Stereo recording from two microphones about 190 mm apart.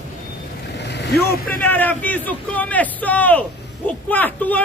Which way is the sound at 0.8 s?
65° left (ahead or behind).